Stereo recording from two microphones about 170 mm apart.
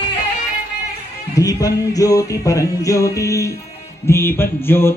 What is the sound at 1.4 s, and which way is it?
Music, 20° left (ahead or behind).